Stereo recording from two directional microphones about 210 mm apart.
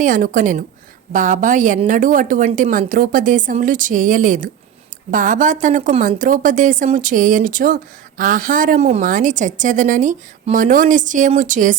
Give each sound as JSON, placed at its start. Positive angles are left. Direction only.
{"t": 0.0, "sound": "a woman's voice", "side_deg": -40}